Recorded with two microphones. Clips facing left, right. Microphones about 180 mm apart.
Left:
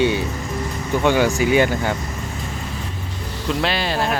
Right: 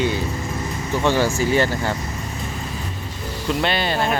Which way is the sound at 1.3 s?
15° left (ahead or behind).